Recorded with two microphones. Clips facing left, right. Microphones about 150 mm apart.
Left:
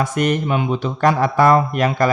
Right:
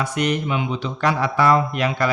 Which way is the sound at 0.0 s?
50° left (ahead or behind).